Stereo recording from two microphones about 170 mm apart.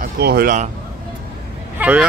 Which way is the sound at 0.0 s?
65° right (ahead or behind).